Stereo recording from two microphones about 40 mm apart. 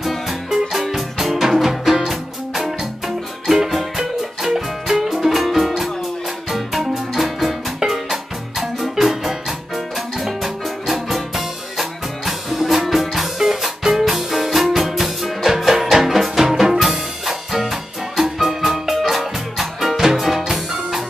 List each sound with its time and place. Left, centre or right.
0.0 s music: centre